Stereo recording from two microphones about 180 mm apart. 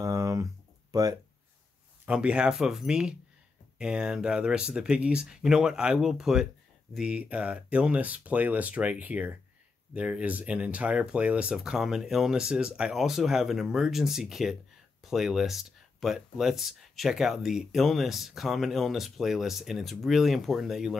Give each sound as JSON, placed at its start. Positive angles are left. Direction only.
{"t": 0.0, "sound": "a sound", "side_deg": -20}
{"t": 0.9, "sound": "speech", "side_deg": -20}
{"t": 2.0, "sound": "speech", "side_deg": -5}